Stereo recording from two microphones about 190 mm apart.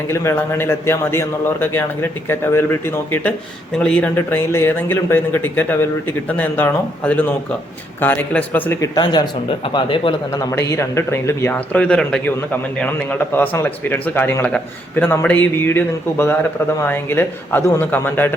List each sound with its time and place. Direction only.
0.1 s speech: 15° left (ahead or behind)
9.7 s speech: 25° left (ahead or behind)
10.7 s speech: 15° left (ahead or behind)